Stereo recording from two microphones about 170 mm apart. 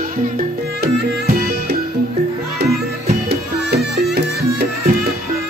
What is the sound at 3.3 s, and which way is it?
Music, 70° right (ahead or behind).